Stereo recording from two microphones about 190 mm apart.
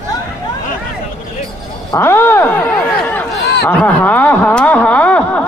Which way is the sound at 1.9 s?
10° left (ahead or behind).